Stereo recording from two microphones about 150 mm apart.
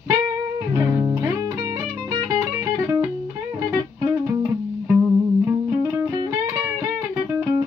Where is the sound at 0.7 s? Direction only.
20° right (ahead or behind).